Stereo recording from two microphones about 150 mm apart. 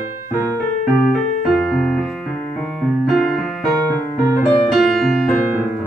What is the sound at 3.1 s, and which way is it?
Music, 5° left (ahead or behind).